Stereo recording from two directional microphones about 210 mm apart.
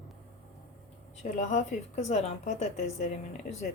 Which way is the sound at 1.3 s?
35° left (ahead or behind).